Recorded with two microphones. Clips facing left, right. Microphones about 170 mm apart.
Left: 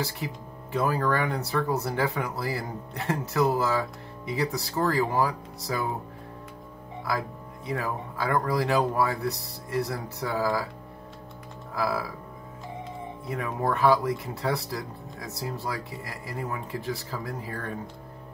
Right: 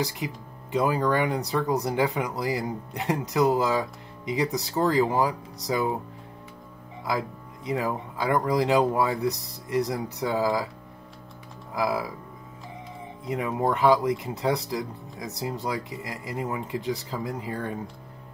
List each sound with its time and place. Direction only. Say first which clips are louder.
0.0 s speech: right 2 dB; 15° right (ahead or behind)
7.1 s speech: right 2 dB; 20° right (ahead or behind)
11.7 s speech: right 2 dB; 20° right (ahead or behind)
13.2 s speech: right 4 dB; 20° right (ahead or behind)